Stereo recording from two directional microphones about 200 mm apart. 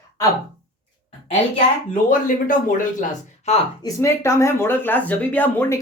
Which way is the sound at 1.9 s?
40° left (ahead or behind).